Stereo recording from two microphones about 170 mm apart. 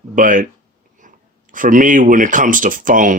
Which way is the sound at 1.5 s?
50° right (ahead or behind).